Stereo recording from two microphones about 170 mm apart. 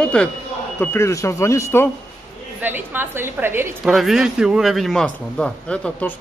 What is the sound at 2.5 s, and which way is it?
A woman's voice, 10° right (ahead or behind).